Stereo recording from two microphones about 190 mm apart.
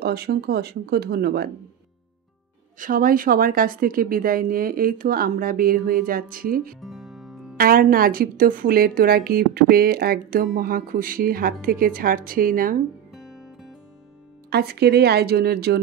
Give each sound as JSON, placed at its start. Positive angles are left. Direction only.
{"t": 0.0, "sound": "speech", "side_deg": -55}
{"t": 2.8, "sound": "speech", "side_deg": -50}
{"t": 6.8, "sound": "music", "side_deg": 0}
{"t": 7.5, "sound": "speech", "side_deg": -50}
{"t": 13.1, "sound": "music", "side_deg": 0}
{"t": 14.5, "sound": "speech", "side_deg": -55}